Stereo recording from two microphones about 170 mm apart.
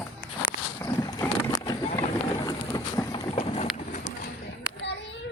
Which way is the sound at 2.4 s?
25° left (ahead or behind).